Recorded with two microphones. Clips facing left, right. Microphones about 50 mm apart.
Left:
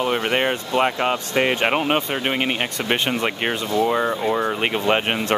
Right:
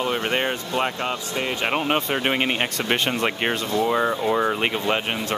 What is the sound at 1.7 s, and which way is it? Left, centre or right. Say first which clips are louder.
Speech: left 2 dB; centre.